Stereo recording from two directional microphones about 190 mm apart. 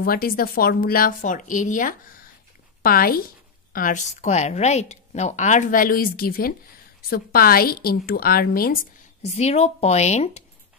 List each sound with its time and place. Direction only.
0.0 s a woman's voice: 50° left (ahead or behind)
9.2 s a woman's voice: 35° left (ahead or behind)